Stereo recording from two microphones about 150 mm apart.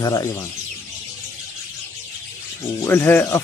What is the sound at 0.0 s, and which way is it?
Speech, 20° left (ahead or behind).